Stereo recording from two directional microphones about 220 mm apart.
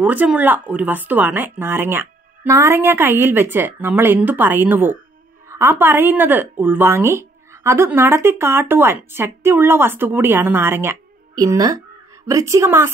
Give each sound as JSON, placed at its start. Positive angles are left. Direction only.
{"t": 0.0, "sound": "speech", "side_deg": -5}